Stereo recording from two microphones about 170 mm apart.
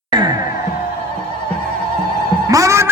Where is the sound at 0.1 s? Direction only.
25° right (ahead or behind).